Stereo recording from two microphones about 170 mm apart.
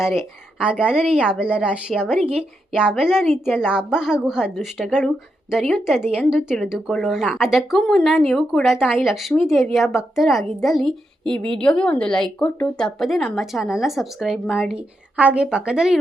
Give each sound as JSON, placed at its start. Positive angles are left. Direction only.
{"t": 0.0, "sound": "a woman's voice", "side_deg": -5}
{"t": 11.2, "sound": "a woman's voice", "side_deg": -30}
{"t": 11.5, "sound": "a woman's voice", "side_deg": 5}